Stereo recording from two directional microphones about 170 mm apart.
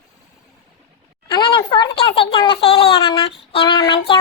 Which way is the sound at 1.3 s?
25° left (ahead or behind).